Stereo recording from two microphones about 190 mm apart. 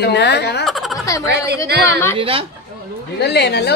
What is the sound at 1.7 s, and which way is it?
Speech, 60° right (ahead or behind).